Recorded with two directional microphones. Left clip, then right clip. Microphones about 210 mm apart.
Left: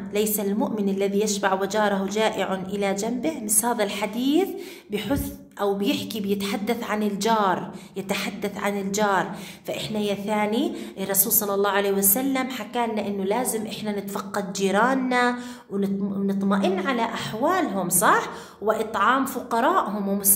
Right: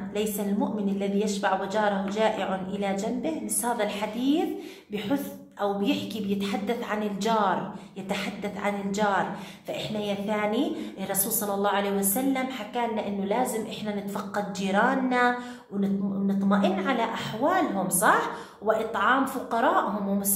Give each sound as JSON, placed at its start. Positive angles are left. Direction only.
{"t": 0.1, "sound": "a woman's voice", "side_deg": 45}
{"t": 16.4, "sound": "a woman's voice", "side_deg": 40}